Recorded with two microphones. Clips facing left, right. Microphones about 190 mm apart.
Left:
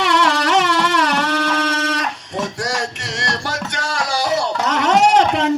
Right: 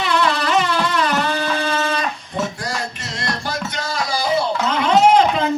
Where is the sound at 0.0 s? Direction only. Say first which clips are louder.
Left 2 dB; 80° left.